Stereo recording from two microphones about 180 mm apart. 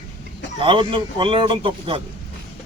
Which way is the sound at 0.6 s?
30° right (ahead or behind).